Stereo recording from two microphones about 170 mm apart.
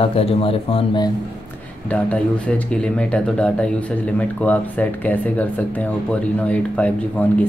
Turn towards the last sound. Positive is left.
turn(degrees=10)  # may be behind; listen again after turning